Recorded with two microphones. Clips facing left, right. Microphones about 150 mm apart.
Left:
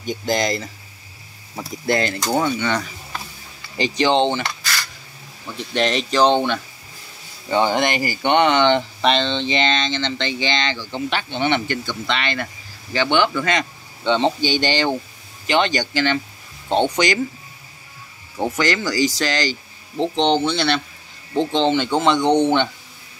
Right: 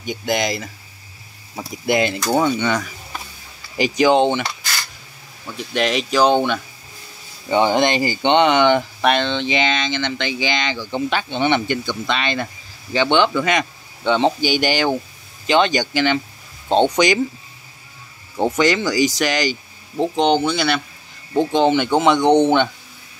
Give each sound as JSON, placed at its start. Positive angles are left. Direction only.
{"t": 0.0, "sound": "speech", "side_deg": -10}
{"t": 1.6, "sound": "speech", "side_deg": -20}
{"t": 5.7, "sound": "speech", "side_deg": -5}
{"t": 18.4, "sound": "speech", "side_deg": -20}